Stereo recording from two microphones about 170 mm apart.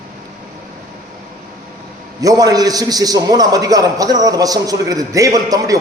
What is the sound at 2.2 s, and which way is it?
A man's voice, 20° right (ahead or behind).